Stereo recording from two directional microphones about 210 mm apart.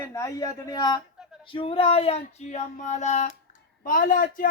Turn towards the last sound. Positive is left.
turn(degrees=40)  # may be behind; listen again after turning